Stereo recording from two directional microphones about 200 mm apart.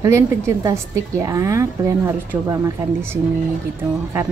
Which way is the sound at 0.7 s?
15° right (ahead or behind).